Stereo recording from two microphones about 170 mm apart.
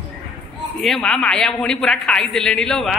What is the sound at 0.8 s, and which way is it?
A man's voice, centre (ahead or behind).